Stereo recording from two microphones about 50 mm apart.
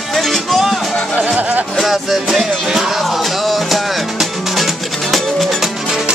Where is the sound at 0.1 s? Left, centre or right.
Centre.